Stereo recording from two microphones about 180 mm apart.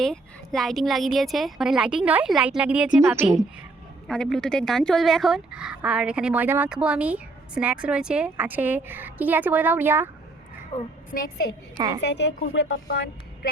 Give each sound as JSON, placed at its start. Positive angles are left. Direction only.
{"t": 0.0, "sound": "speech", "side_deg": 0}
{"t": 11.1, "sound": "a woman's voice", "side_deg": 50}
{"t": 11.9, "sound": "a woman's voice", "side_deg": 75}